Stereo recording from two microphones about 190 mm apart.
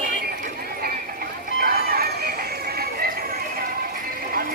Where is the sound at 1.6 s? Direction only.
55° right (ahead or behind).